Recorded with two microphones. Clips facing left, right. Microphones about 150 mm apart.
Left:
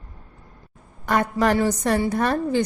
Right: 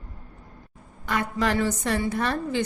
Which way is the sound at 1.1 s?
45° left (ahead or behind).